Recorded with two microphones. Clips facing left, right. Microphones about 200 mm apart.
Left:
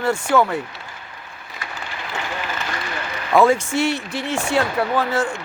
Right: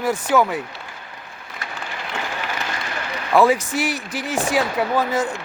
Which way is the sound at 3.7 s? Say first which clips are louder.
Left 3 dB; 35° right (ahead or behind).